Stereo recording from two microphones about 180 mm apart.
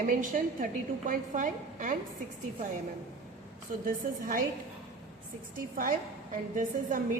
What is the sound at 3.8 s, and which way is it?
Speech, 50° right (ahead or behind).